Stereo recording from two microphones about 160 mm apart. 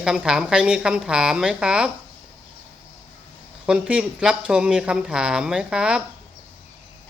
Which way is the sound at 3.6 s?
5° right (ahead or behind).